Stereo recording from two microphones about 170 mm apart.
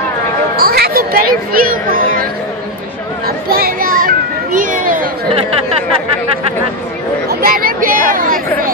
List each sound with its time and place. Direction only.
0.6 s speech: 65° right (ahead or behind)
3.3 s children playing: 65° right (ahead or behind)
7.2 s speech: 60° right (ahead or behind)